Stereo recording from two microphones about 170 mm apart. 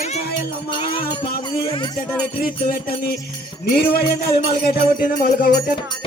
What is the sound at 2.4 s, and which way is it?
Music, 65° left (ahead or behind).